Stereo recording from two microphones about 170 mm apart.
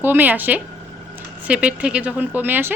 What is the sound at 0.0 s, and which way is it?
A woman's voice, 10° right (ahead or behind).